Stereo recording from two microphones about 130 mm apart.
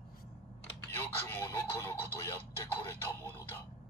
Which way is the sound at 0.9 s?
20° left (ahead or behind).